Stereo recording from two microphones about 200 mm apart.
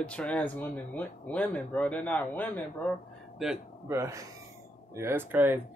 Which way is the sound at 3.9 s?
15° right (ahead or behind).